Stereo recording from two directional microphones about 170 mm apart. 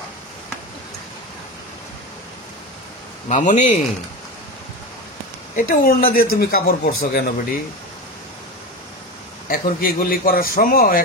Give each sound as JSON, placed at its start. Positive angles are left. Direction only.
{"t": 3.3, "sound": "speech", "side_deg": 45}
{"t": 5.6, "sound": "a man's voice", "side_deg": 55}
{"t": 9.5, "sound": "a man's voice", "side_deg": 60}